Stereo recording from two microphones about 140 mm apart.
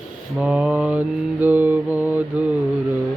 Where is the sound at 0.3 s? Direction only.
5° right (ahead or behind).